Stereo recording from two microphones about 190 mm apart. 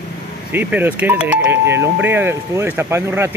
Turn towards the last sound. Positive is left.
turn(degrees=-10)  # may be behind; listen again after turning